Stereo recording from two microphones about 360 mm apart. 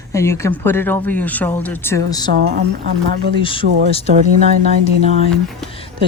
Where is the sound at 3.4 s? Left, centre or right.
Centre.